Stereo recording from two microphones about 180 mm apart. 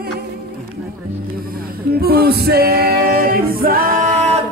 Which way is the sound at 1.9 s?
60° right (ahead or behind).